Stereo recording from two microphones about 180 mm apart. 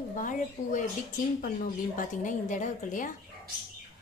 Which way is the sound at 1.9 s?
45° left (ahead or behind).